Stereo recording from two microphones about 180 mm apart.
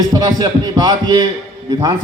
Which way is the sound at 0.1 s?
20° right (ahead or behind).